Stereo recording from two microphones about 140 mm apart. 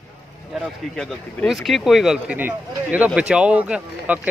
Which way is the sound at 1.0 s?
Centre (ahead or behind).